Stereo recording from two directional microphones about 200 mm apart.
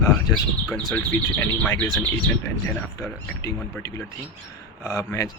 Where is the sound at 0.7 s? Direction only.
5° left (ahead or behind).